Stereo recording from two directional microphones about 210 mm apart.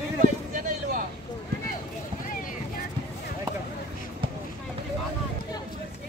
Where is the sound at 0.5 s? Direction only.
40° right (ahead or behind).